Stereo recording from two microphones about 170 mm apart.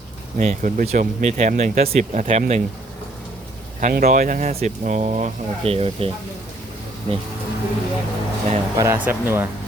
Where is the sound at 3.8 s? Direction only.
55° right (ahead or behind); by 6.1 s 35° right (ahead or behind).